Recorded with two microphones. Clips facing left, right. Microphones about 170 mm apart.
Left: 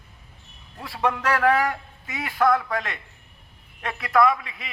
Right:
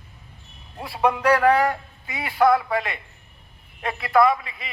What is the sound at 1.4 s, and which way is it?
A man's voice, centre (ahead or behind).